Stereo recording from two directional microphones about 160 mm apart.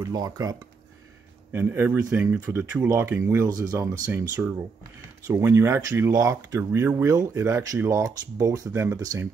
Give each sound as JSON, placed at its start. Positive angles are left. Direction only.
{"t": 0.0, "sound": "speech", "side_deg": -25}
{"t": 1.5, "sound": "speech", "side_deg": -15}